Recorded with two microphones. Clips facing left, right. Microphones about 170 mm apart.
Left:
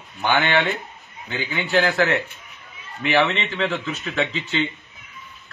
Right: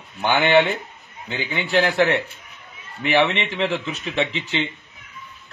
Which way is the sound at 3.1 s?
15° right (ahead or behind).